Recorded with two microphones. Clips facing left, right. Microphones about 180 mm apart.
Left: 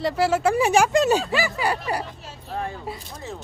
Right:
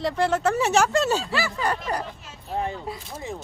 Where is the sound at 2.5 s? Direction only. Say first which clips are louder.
Right 2 dB; 20° right (ahead or behind).